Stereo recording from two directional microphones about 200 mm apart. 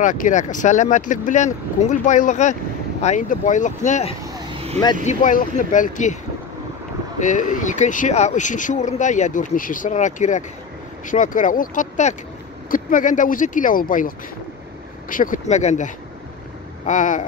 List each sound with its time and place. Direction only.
0.0 s speech: 40° left (ahead or behind)
7.2 s speech: 40° left (ahead or behind)